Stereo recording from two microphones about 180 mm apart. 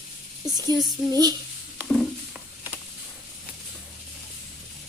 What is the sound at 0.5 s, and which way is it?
Speech, 20° right (ahead or behind).